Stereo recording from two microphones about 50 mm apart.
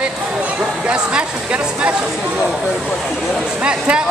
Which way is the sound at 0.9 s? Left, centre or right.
Right.